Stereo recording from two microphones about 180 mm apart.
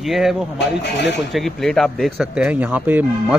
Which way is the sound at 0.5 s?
75° left (ahead or behind).